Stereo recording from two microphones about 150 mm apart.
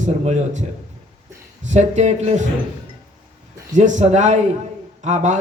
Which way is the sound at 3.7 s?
55° right (ahead or behind).